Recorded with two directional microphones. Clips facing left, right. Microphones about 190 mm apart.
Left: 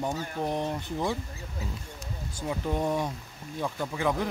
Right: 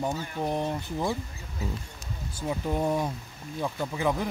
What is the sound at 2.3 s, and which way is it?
Speech, 5° right (ahead or behind).